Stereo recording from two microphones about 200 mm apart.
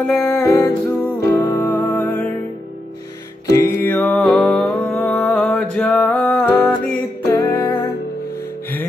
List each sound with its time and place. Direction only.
0.0 s music: centre (ahead or behind)
0.4 s music: 15° left (ahead or behind)
3.4 s music: 15° left (ahead or behind)